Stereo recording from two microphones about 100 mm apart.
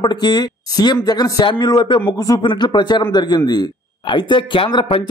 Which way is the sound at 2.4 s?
50° left (ahead or behind).